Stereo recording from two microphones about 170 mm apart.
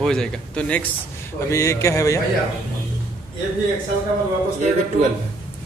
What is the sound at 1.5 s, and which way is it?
Speech, 15° left (ahead or behind).